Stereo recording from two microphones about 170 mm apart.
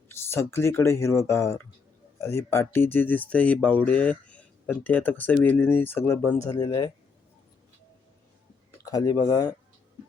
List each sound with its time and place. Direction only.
0.1 s speech: 15° left (ahead or behind)
8.8 s speech: 20° left (ahead or behind)